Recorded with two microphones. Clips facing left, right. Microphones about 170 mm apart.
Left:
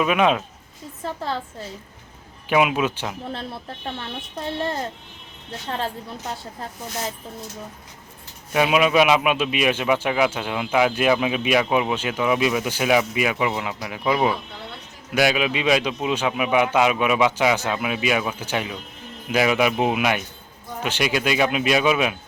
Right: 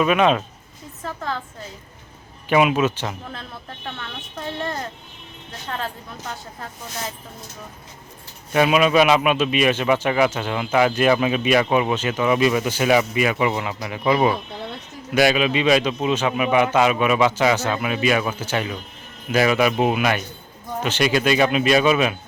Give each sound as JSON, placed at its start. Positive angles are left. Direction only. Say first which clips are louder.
{"t": 0.0, "sound": "speech", "louder": "right 2 dB", "side_deg": 5}
{"t": 1.0, "sound": "speech", "louder": "left 1 dB", "side_deg": 30}
{"t": 2.5, "sound": "speech", "louder": "right 2 dB", "side_deg": 5}
{"t": 3.2, "sound": "speech", "louder": "left 4 dB", "side_deg": 30}
{"t": 8.5, "sound": "a man's voice", "louder": "right 1 dB", "side_deg": 5}